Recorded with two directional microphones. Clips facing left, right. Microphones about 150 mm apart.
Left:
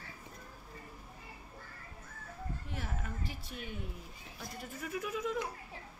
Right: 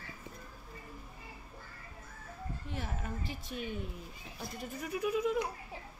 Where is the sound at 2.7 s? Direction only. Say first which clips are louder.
Right 4 dB; 20° right (ahead or behind).